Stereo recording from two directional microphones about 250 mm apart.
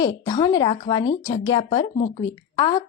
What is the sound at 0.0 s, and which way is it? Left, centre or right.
Speech, centre.